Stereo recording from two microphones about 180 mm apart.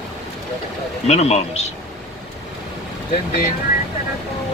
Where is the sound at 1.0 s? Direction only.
40° left (ahead or behind).